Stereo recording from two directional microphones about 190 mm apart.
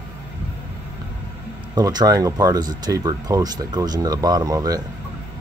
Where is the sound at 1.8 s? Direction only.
20° right (ahead or behind).